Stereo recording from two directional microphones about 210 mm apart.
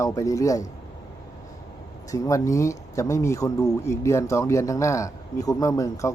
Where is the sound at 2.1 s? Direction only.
15° left (ahead or behind).